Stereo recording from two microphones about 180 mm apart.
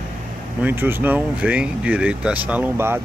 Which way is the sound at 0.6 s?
10° right (ahead or behind).